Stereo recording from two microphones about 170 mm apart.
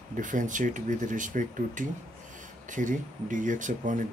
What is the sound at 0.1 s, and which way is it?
Speech, 50° right (ahead or behind).